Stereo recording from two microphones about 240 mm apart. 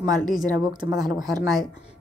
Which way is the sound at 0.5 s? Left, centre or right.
Centre.